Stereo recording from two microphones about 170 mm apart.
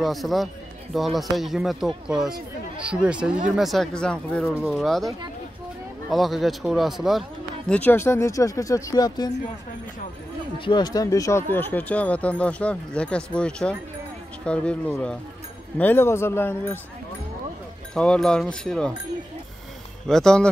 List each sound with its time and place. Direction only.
0.0 s a man's voice: centre (ahead or behind); by 9.3 s 25° left (ahead or behind)
10.6 s a man's voice: 25° left (ahead or behind)
17.9 s speech: 5° left (ahead or behind)
20.1 s speech: 5° left (ahead or behind)